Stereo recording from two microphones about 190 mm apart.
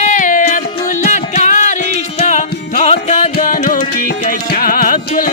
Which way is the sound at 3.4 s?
45° left (ahead or behind).